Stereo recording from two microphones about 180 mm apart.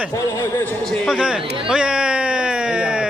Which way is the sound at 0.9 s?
Centre (ahead or behind).